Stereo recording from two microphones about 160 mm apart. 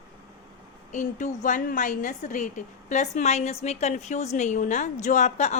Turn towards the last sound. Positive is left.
turn(degrees=45)  # may be behind; listen again after turning